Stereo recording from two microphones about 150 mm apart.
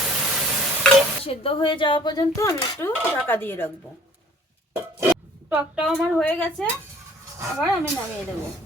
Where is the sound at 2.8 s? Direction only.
15° left (ahead or behind).